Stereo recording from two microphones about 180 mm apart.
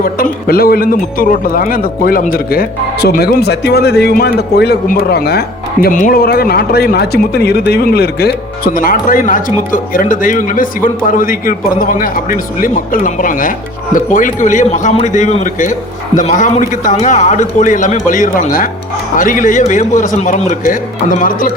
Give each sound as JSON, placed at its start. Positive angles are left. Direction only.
{"t": 0.0, "sound": "a man's voice", "side_deg": 55}